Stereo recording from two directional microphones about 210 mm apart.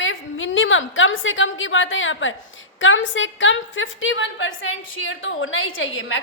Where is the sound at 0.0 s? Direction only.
65° left (ahead or behind).